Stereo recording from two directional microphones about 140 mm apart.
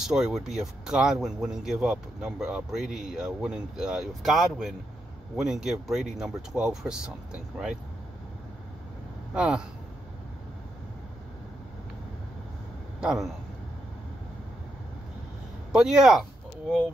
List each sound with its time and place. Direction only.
0.0 s speech: 5° right (ahead or behind)
9.3 s speech: 5° right (ahead or behind)
13.0 s speech: 5° right (ahead or behind)
15.7 s speech: 5° right (ahead or behind)